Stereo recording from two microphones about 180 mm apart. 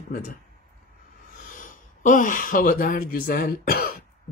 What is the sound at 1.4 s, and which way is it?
Speech, 50° left (ahead or behind).